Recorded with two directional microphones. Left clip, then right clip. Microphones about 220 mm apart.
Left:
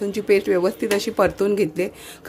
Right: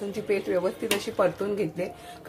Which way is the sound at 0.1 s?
40° left (ahead or behind).